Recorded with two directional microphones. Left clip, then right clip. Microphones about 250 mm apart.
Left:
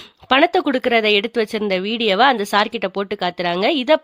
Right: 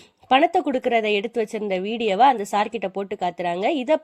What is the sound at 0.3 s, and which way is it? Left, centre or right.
A woman's voice, centre.